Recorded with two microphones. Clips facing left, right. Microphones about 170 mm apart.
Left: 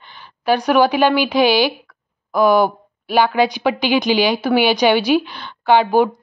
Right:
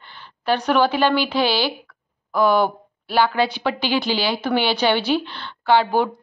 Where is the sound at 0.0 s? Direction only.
15° left (ahead or behind).